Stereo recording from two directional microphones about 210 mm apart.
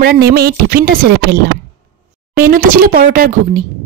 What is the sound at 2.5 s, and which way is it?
Speech, 40° right (ahead or behind).